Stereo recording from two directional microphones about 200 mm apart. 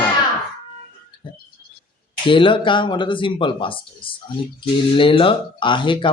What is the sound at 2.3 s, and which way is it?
A woman's voice, 25° left (ahead or behind).